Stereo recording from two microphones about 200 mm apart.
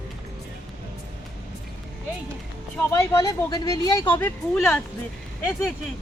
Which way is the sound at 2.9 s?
15° left (ahead or behind).